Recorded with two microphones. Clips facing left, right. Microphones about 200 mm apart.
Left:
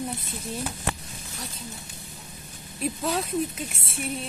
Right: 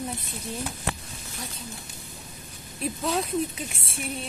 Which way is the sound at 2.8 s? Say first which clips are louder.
Even; centre (ahead or behind).